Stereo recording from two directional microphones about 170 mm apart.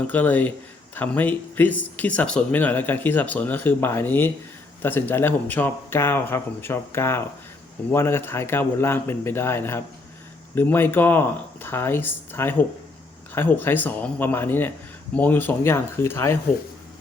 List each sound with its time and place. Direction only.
0.1 s speech: 10° left (ahead or behind)